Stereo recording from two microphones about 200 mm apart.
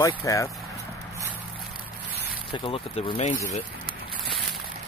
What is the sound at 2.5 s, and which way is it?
Speech, 25° left (ahead or behind).